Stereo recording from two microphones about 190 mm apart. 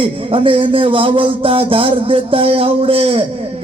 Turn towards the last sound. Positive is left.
turn(degrees=-30)  # may be behind; listen again after turning